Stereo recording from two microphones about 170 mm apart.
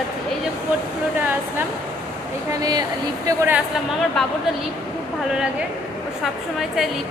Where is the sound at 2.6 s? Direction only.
25° right (ahead or behind).